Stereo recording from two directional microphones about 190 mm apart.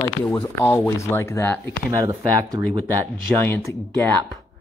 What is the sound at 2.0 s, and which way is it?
Speech, 20° right (ahead or behind).